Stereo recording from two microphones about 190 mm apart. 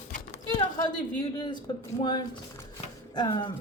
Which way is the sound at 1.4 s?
25° left (ahead or behind).